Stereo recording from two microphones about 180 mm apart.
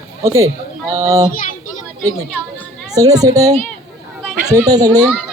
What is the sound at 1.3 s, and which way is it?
Speech, 50° left (ahead or behind).